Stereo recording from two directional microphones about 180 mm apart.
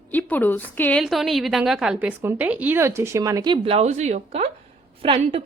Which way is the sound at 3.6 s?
35° right (ahead or behind).